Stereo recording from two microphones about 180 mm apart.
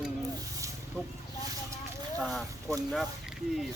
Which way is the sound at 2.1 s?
Centre (ahead or behind).